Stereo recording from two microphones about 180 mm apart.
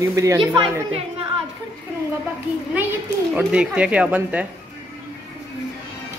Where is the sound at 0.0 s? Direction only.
15° right (ahead or behind).